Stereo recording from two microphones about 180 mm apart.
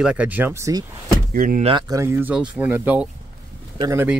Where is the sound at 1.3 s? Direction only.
50° right (ahead or behind).